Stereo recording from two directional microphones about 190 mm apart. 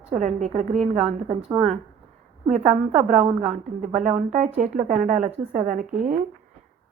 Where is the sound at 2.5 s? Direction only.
35° right (ahead or behind).